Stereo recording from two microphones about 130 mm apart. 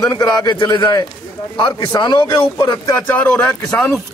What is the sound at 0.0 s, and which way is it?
A man's voice, 25° left (ahead or behind).